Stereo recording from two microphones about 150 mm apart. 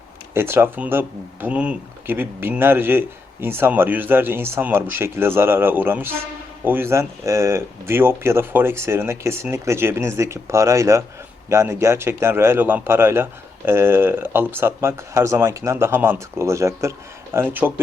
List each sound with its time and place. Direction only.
0.3 s speech: 15° right (ahead or behind)